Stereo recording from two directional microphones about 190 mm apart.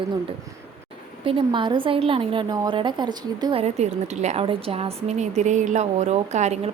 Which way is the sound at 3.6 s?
35° right (ahead or behind).